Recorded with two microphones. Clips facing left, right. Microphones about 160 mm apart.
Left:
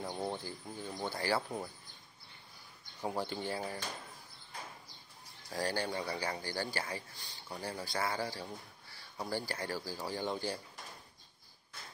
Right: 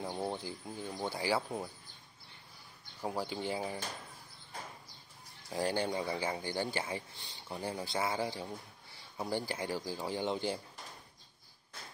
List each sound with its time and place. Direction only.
0.0 s speech: 10° right (ahead or behind)
3.0 s speech: 5° right (ahead or behind)
5.5 s speech: 20° right (ahead or behind)